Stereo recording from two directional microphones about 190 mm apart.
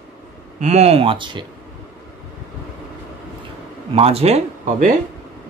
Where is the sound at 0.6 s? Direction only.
35° right (ahead or behind).